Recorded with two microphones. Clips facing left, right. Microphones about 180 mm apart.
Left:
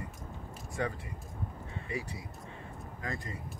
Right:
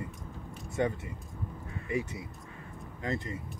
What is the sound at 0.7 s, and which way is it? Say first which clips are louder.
Speech: right 5 dB; 25° right (ahead or behind).